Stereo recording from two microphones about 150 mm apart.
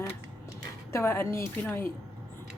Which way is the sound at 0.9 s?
15° left (ahead or behind).